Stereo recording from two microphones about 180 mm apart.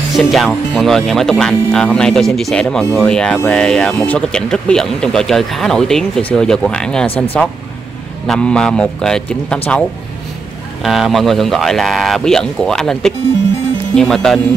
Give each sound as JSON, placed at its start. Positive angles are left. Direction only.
{"t": 0.1, "sound": "speech", "side_deg": 0}
{"t": 10.8, "sound": "speech", "side_deg": 0}